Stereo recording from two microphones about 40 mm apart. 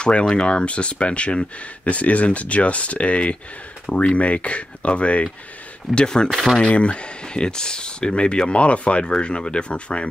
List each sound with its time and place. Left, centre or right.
0.4 s speech: left
5.9 s speech: left